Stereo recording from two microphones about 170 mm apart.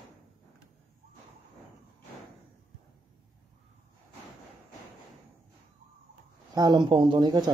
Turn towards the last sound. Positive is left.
turn(degrees=-25)  # may be behind; listen again after turning